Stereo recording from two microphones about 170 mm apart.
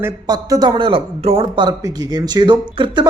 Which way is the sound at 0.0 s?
20° right (ahead or behind).